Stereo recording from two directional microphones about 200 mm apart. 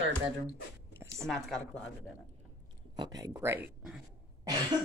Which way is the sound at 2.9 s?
20° right (ahead or behind).